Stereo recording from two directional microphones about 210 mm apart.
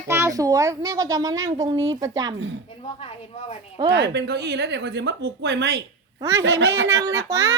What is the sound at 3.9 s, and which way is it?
A woman's voice, 55° right (ahead or behind).